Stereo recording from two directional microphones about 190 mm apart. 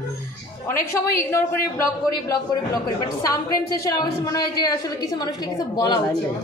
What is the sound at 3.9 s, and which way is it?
A woman's voice, 20° left (ahead or behind).